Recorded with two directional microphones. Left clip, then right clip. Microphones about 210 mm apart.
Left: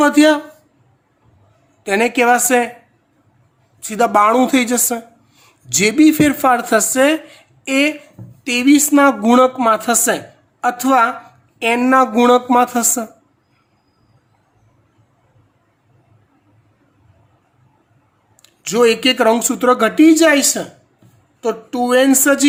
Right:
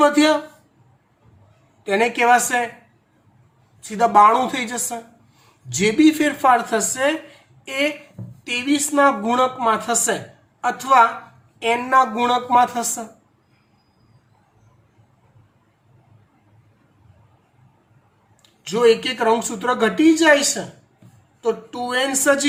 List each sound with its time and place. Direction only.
0.0 s speech: 55° left (ahead or behind)
1.8 s speech: 55° left (ahead or behind)
3.8 s speech: 55° left (ahead or behind)
18.4 s speech: 60° left (ahead or behind)